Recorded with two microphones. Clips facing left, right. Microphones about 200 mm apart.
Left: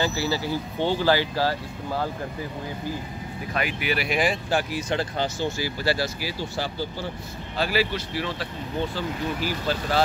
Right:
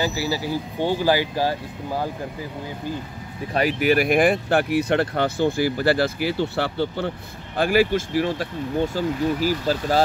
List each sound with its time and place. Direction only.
0.0 s speech: 10° right (ahead or behind)
3.5 s speech: 40° right (ahead or behind); by 7.1 s 65° right (ahead or behind)
7.5 s speech: 50° right (ahead or behind)